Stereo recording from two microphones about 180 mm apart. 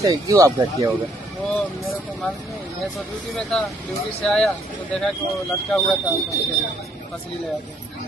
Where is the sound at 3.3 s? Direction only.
5° left (ahead or behind).